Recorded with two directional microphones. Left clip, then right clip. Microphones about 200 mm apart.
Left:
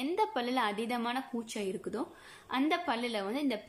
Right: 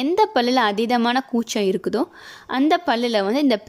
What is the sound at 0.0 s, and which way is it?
A woman's voice, 40° right (ahead or behind).